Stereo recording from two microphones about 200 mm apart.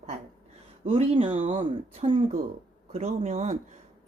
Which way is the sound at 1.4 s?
40° right (ahead or behind).